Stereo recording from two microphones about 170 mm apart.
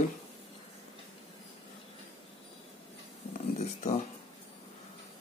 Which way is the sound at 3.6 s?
40° left (ahead or behind).